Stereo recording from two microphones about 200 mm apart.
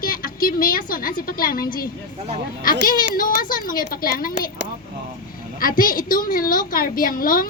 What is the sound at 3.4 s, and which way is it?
Speech, 45° left (ahead or behind).